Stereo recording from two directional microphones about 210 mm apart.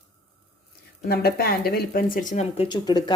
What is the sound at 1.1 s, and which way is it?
Speech, 45° left (ahead or behind).